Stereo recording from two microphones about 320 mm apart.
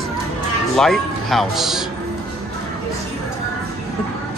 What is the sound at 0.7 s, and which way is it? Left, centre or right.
A man's voice, centre.